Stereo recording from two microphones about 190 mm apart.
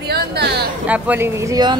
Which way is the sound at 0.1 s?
55° right (ahead or behind).